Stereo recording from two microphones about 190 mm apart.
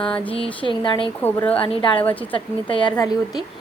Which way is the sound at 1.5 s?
25° left (ahead or behind).